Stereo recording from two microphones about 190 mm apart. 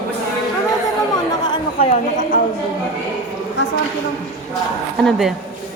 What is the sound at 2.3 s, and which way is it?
Speech, 45° left (ahead or behind).